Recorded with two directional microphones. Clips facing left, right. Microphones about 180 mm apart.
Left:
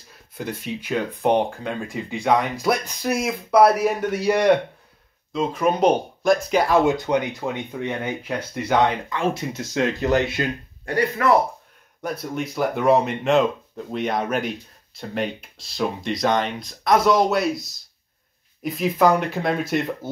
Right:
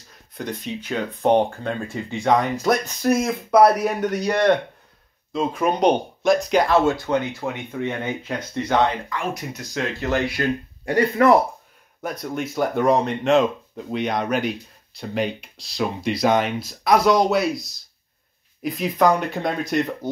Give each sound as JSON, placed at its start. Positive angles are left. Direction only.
{"t": 0.4, "sound": "speech", "side_deg": 10}
{"t": 9.1, "sound": "speech", "side_deg": 25}
{"t": 11.2, "sound": "speech", "side_deg": -30}
{"t": 12.0, "sound": "speech", "side_deg": 0}